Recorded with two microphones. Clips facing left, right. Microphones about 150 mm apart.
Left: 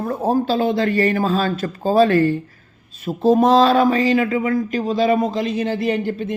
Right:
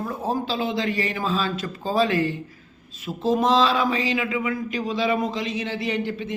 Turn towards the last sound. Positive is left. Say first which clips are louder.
# left 5 dB
turn(degrees=45)  # may be behind; listen again after turning